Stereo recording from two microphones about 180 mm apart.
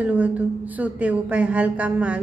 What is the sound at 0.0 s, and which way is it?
A woman's voice, 10° right (ahead or behind).